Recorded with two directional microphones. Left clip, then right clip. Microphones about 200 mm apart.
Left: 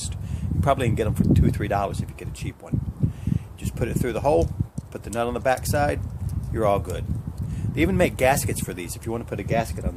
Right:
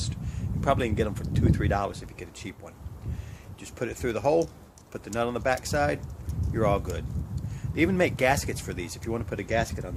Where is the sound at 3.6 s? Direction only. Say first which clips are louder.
Left 3 dB; 10° left (ahead or behind).